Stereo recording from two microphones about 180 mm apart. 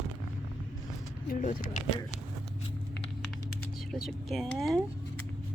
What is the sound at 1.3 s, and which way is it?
Speech, 45° left (ahead or behind).